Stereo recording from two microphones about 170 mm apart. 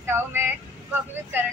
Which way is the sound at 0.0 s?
15° right (ahead or behind).